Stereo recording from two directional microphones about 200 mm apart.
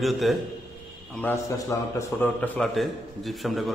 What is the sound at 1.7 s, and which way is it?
A man's voice, 15° left (ahead or behind).